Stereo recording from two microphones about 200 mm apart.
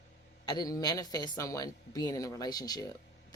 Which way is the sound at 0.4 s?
20° left (ahead or behind).